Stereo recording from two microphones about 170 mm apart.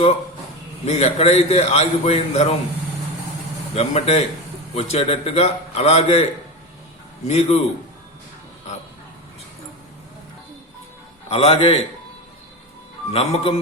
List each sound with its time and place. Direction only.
0.9 s a man's voice: 40° left (ahead or behind)
3.8 s a man's voice: 40° left (ahead or behind)
7.3 s a man's voice: 40° left (ahead or behind)
11.3 s a man's voice: 35° left (ahead or behind)
13.1 s a man's voice: 35° left (ahead or behind)